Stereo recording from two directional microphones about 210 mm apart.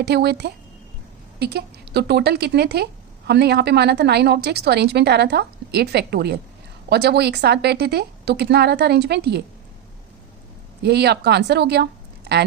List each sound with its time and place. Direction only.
0.0 s speech: 50° right (ahead or behind)
10.8 s a woman's voice: 50° right (ahead or behind)